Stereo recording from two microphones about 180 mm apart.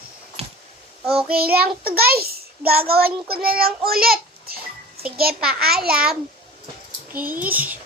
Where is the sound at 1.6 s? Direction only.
60° right (ahead or behind).